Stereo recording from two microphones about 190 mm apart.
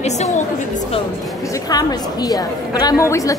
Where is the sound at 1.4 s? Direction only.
15° left (ahead or behind).